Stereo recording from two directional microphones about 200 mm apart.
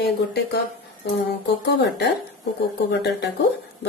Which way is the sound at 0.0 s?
55° left (ahead or behind).